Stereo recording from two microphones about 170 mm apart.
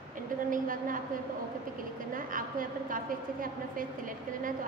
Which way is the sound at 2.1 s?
55° right (ahead or behind).